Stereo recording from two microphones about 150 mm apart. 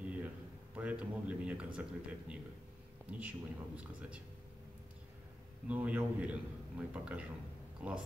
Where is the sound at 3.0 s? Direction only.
10° right (ahead or behind).